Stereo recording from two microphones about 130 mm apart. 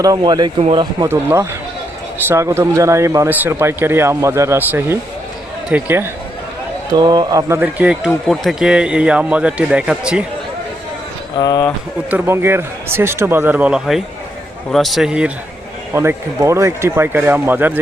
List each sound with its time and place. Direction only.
0.0 s speech: 30° right (ahead or behind)
1.0 s a man's voice: 20° right (ahead or behind)
6.9 s a man's voice: 30° right (ahead or behind); by 10.2 s 5° right (ahead or behind)
11.3 s speech: 30° left (ahead or behind)
12.1 s a man's voice: 15° right (ahead or behind)
15.9 s a man's voice: 20° right (ahead or behind)